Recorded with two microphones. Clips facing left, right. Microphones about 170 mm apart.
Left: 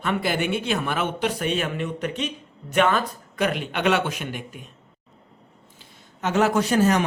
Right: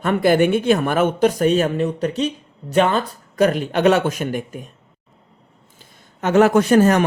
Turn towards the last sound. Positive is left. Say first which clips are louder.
# right 6 dB
turn(degrees=-55)  # may be behind; listen again after turning